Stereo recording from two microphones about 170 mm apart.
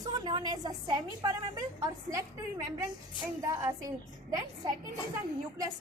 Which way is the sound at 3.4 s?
20° right (ahead or behind).